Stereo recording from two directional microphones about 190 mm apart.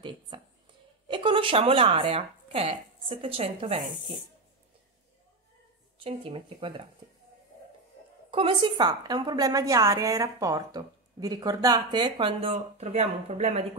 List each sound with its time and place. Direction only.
1.0 s speech: 25° right (ahead or behind)
6.0 s a woman's voice: 30° right (ahead or behind)
8.3 s a woman's voice: 25° right (ahead or behind)